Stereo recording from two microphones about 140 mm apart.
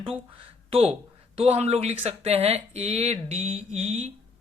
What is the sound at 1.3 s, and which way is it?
Speech, 45° right (ahead or behind).